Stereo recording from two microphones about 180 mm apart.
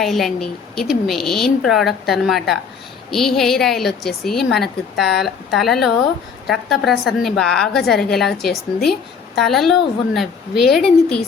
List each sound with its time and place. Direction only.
0.0 s a woman's voice: centre (ahead or behind)